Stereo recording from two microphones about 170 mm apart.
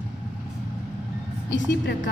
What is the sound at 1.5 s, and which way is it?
Speech, 90° left.